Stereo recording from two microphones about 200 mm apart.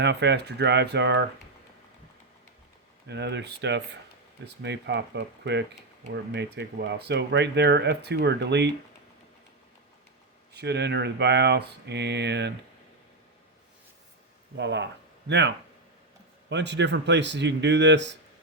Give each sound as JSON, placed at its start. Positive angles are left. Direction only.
{"t": 0.0, "sound": "speech", "side_deg": -60}
{"t": 3.1, "sound": "speech", "side_deg": -60}
{"t": 10.5, "sound": "speech", "side_deg": -55}
{"t": 14.5, "sound": "speech", "side_deg": -60}